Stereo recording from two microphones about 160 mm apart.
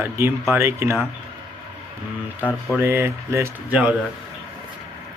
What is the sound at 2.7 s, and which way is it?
Speech, 15° right (ahead or behind).